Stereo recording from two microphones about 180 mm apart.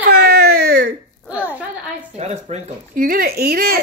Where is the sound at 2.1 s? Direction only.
35° right (ahead or behind).